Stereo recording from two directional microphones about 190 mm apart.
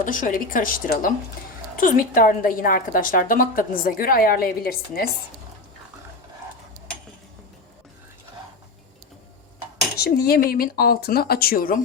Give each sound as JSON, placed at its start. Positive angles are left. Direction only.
{"t": 0.0, "sound": "a woman's voice", "side_deg": 45}
{"t": 10.0, "sound": "a woman's voice", "side_deg": 55}